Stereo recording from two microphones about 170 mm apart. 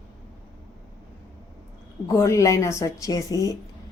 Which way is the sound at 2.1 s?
20° left (ahead or behind).